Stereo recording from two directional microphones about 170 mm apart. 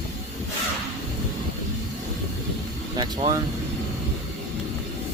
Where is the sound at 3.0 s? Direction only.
25° right (ahead or behind).